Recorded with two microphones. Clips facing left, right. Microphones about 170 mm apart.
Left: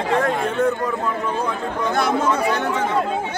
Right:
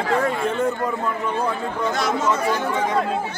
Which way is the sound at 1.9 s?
55° left (ahead or behind).